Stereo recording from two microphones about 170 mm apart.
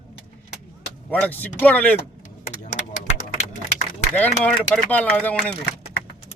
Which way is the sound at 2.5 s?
45° left (ahead or behind).